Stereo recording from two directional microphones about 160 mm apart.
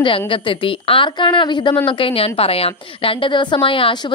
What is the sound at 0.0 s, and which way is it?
A woman's voice, 35° left (ahead or behind).